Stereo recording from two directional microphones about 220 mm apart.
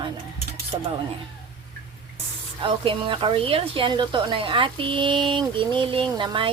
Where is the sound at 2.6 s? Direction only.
25° right (ahead or behind).